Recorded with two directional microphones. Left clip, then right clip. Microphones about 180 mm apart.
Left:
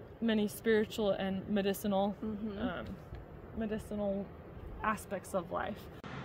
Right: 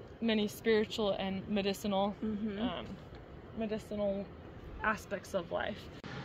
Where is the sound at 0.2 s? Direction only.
40° left (ahead or behind).